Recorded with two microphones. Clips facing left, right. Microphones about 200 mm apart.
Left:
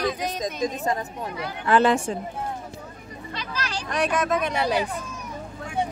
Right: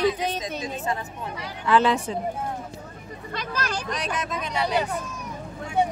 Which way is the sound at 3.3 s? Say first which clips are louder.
Right 2 dB; 50° right (ahead or behind).